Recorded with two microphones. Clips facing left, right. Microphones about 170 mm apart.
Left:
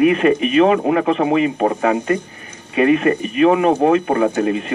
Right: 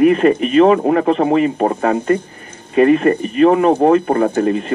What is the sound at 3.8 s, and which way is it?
Speech, 45° right (ahead or behind).